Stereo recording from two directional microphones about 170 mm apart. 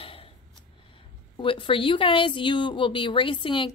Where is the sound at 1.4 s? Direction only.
30° left (ahead or behind).